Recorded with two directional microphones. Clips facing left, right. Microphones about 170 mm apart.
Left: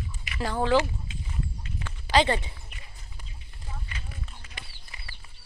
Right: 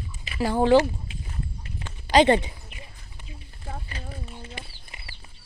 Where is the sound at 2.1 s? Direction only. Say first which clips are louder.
Right 6 dB; 20° right (ahead or behind).